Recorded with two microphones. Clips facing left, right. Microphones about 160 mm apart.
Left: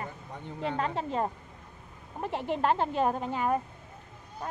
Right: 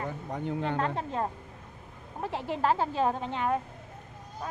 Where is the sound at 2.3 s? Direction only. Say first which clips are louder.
Even; centre (ahead or behind).